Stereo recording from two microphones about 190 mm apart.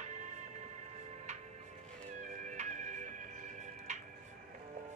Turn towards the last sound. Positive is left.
turn(degrees=-40)  # may be behind; listen again after turning